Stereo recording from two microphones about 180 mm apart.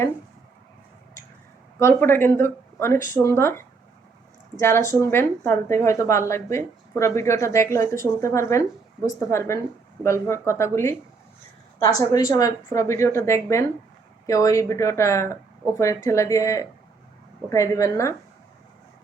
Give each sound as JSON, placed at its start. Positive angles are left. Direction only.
{"t": 1.8, "sound": "a woman's voice", "side_deg": 10}